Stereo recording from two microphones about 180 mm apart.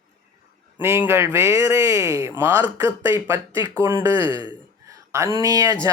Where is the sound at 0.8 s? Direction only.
15° right (ahead or behind).